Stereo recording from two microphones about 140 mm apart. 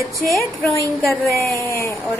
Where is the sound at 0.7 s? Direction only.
15° left (ahead or behind).